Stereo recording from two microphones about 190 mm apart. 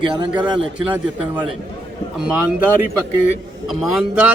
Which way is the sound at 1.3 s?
5° right (ahead or behind).